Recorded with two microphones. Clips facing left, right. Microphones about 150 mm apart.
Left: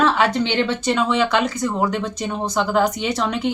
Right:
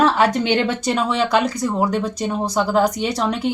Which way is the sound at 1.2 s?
35° right (ahead or behind).